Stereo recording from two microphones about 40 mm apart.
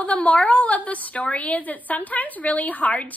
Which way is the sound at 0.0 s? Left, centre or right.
Left.